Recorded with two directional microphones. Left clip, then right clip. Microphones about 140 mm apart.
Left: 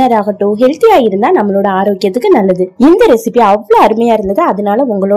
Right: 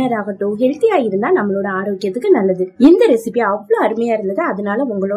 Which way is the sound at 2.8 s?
25° left (ahead or behind).